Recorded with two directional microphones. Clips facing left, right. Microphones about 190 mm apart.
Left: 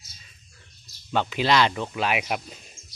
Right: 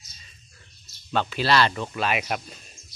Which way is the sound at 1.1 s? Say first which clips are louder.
Even; 15° left (ahead or behind).